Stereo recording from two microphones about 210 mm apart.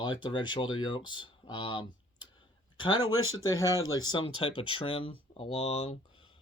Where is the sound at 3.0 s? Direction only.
75° left (ahead or behind).